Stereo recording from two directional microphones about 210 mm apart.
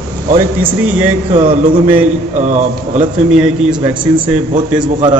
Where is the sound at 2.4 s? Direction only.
35° right (ahead or behind).